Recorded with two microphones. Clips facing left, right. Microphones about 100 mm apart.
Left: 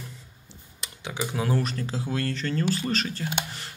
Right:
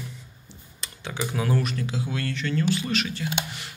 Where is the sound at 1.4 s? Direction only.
30° left (ahead or behind).